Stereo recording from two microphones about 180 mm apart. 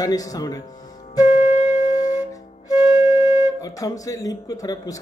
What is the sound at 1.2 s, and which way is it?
Music, 40° left (ahead or behind).